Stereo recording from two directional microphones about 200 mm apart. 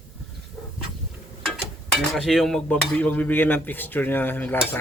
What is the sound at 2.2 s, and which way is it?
Speech, centre (ahead or behind).